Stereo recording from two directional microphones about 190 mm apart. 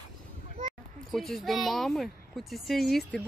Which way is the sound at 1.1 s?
Centre (ahead or behind).